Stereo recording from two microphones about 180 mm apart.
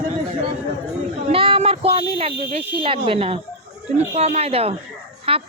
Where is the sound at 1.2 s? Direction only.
30° right (ahead or behind).